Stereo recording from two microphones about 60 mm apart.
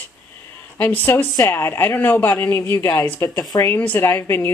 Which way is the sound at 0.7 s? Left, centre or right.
Left.